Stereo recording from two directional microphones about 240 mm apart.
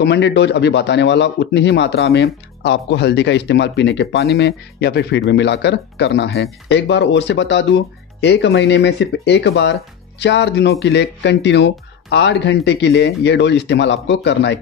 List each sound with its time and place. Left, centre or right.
0.0 s a man's voice: left